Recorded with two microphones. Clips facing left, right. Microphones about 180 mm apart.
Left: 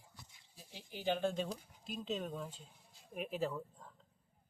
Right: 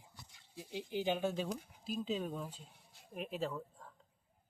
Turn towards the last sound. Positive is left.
turn(degrees=0)  # may be behind; listen again after turning